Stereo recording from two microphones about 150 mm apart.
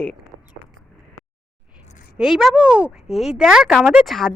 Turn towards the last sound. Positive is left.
turn(degrees=0)  # may be behind; listen again after turning